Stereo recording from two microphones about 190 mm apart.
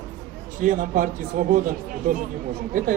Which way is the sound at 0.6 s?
45° right (ahead or behind).